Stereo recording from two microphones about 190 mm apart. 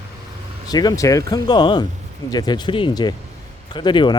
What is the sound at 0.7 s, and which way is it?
Speech, 20° left (ahead or behind).